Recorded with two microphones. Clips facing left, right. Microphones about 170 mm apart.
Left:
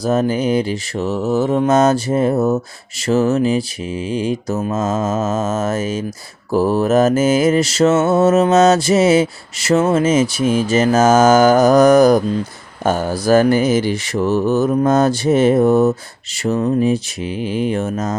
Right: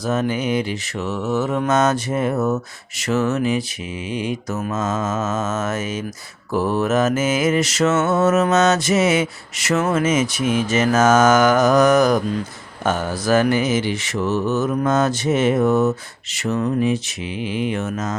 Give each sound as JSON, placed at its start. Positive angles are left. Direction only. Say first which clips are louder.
{"t": 0.0, "sound": "mantra", "louder": "left 5 dB", "side_deg": 35}